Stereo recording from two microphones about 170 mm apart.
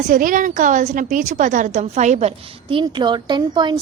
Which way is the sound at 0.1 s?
50° right (ahead or behind).